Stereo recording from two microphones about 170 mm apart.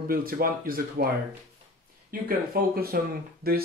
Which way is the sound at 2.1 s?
60° right (ahead or behind).